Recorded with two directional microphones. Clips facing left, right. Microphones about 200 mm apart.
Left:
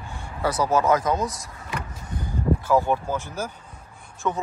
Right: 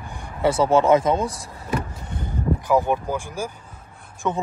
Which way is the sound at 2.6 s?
15° right (ahead or behind).